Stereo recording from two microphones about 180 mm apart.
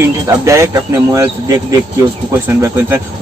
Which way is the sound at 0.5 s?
15° right (ahead or behind).